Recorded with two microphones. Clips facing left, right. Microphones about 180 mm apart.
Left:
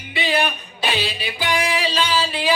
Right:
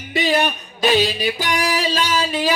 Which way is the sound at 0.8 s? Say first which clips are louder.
Right 8 dB; 45° right (ahead or behind).